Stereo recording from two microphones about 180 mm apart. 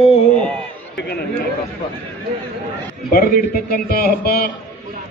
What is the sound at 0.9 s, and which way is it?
Chatter, 65° left (ahead or behind).